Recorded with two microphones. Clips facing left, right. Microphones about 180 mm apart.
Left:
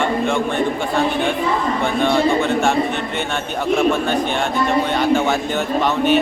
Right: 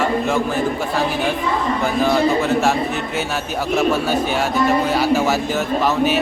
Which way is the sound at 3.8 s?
5° right (ahead or behind).